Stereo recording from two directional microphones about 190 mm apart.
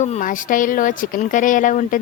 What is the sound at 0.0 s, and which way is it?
A woman's voice, 40° left (ahead or behind).